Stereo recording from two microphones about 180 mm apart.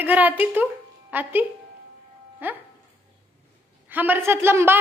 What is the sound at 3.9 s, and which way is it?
Speech, 10° right (ahead or behind).